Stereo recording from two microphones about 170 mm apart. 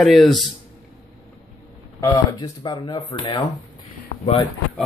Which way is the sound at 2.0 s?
25° left (ahead or behind).